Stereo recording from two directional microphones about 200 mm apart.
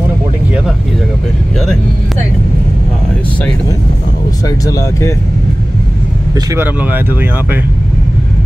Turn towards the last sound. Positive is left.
turn(degrees=-10)  # may be behind; listen again after turning